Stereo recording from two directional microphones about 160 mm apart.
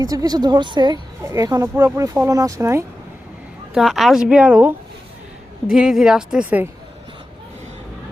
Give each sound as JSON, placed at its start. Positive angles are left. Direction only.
{"t": 0.0, "sound": "speech", "side_deg": -25}
{"t": 3.8, "sound": "speech", "side_deg": 0}